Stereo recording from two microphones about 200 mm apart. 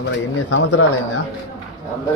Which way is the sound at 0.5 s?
80° left.